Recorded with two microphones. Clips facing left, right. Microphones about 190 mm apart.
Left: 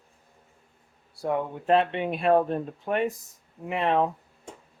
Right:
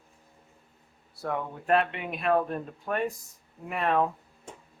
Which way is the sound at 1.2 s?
15° left (ahead or behind).